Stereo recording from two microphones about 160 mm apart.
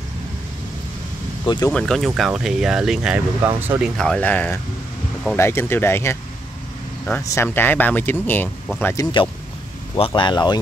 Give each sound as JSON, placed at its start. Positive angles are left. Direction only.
{"t": 1.4, "sound": "speech", "side_deg": 30}
{"t": 1.7, "sound": "speech", "side_deg": 5}
{"t": 4.0, "sound": "speech", "side_deg": 5}
{"t": 9.0, "sound": "speech", "side_deg": 30}